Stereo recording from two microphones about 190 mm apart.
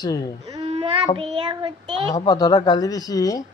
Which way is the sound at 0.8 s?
25° right (ahead or behind).